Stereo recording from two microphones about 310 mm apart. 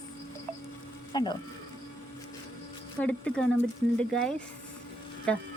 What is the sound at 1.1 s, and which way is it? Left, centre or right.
Speech, centre.